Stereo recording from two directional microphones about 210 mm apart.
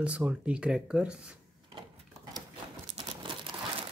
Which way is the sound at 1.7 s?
20° right (ahead or behind).